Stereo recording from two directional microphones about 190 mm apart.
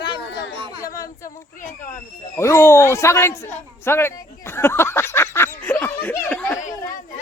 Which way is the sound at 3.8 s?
10° left (ahead or behind).